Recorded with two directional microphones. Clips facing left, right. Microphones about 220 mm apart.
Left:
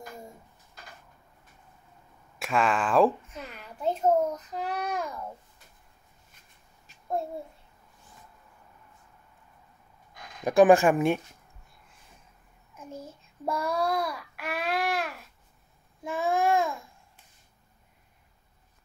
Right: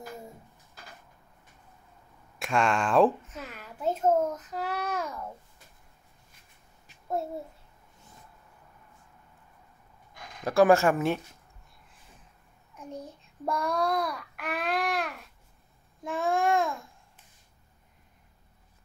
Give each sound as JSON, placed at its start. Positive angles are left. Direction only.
{"t": 2.3, "sound": "a sound", "side_deg": 0}
{"t": 10.4, "sound": "speech", "side_deg": 15}
{"t": 12.7, "sound": "child singing", "side_deg": 0}
{"t": 16.0, "sound": "babbling", "side_deg": 0}